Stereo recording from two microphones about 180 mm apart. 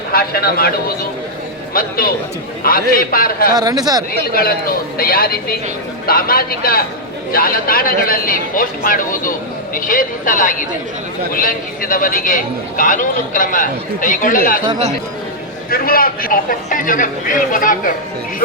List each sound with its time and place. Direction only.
0.1 s speech: 55° left (ahead or behind)
3.5 s speech: 20° right (ahead or behind)
4.3 s a man's voice: 55° left (ahead or behind)
15.7 s a man's voice: 55° left (ahead or behind)